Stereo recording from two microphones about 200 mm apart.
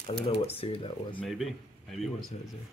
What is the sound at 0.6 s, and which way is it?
Speech, 25° left (ahead or behind).